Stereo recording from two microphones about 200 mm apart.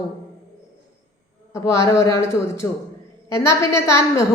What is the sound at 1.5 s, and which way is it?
A woman's voice, 15° left (ahead or behind).